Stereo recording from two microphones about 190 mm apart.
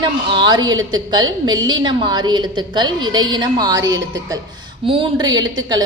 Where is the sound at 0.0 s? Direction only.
25° right (ahead or behind).